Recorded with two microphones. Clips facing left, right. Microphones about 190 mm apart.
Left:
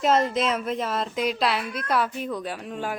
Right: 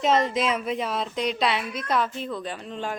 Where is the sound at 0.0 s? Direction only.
5° left (ahead or behind).